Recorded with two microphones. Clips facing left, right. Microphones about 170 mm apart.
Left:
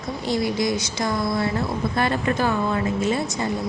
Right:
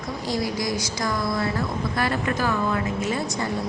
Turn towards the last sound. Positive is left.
turn(degrees=25)  # may be behind; listen again after turning